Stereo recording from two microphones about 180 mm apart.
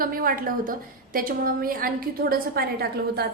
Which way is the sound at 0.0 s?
50° right (ahead or behind).